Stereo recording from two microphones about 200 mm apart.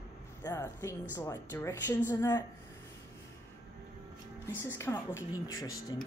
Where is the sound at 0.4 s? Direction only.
15° left (ahead or behind).